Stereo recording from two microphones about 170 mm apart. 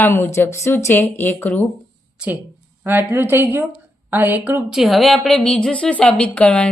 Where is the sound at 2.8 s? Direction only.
10° right (ahead or behind).